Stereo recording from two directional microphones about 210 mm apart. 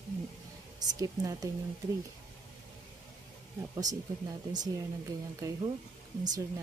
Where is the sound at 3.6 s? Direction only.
15° right (ahead or behind).